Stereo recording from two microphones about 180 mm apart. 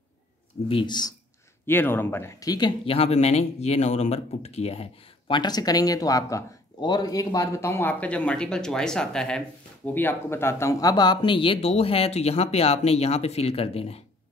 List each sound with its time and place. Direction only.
0.7 s speech: 25° left (ahead or behind)
1.7 s speech: 10° left (ahead or behind); by 4.8 s 35° left (ahead or behind)
5.3 s speech: 25° left (ahead or behind)